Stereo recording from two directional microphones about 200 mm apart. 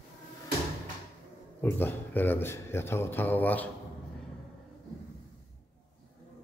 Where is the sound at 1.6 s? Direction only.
10° left (ahead or behind).